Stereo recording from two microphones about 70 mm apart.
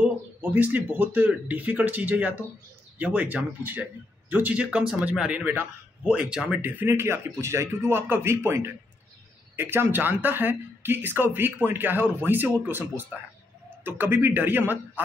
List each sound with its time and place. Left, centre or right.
0.4 s speech: right
5.4 s speech: right
6.0 s speech: centre
6.6 s speech: right